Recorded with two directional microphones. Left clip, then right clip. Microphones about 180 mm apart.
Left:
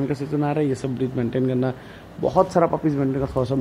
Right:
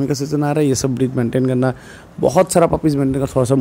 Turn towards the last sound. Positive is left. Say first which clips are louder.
# right 6 dB
turn(degrees=-45)  # may be behind; listen again after turning